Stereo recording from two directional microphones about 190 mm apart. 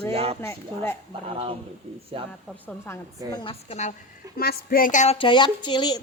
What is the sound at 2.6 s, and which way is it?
Speech, 10° left (ahead or behind).